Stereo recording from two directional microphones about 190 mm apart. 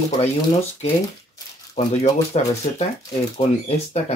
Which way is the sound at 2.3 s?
35° left (ahead or behind).